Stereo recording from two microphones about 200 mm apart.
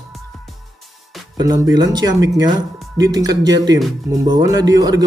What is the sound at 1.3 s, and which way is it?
Speech, 20° right (ahead or behind).